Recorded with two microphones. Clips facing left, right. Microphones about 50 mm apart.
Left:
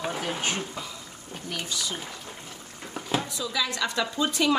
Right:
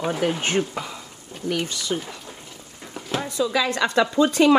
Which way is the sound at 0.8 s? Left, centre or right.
Right.